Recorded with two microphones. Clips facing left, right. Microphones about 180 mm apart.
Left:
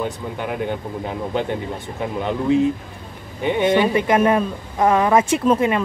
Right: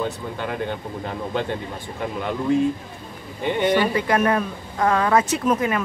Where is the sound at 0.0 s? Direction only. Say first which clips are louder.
Left 1 dB; 15° left (ahead or behind).